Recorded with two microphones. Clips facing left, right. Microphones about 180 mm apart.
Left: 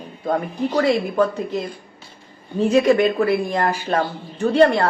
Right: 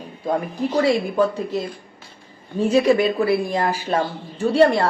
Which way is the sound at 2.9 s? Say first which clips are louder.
Left 2 dB; 10° right (ahead or behind).